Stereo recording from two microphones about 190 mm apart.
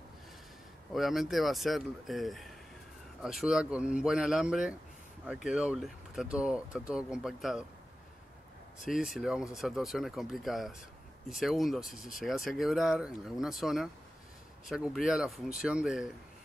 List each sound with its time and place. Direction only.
0.9 s speech: centre (ahead or behind)
8.8 s speech: centre (ahead or behind)